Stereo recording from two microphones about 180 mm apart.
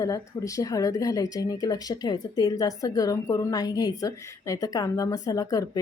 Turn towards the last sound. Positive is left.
turn(degrees=20)  # may be behind; listen again after turning